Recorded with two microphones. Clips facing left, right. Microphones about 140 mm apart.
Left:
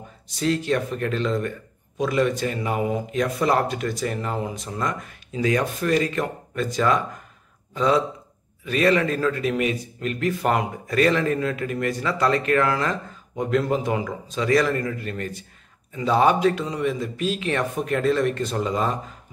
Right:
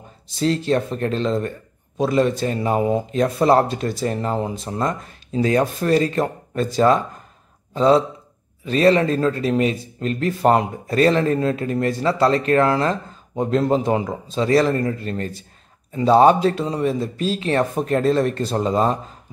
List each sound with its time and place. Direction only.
0.4 s a man's voice: 30° right (ahead or behind)